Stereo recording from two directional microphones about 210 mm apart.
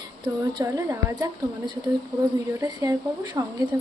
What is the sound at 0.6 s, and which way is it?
A woman's voice, 15° right (ahead or behind).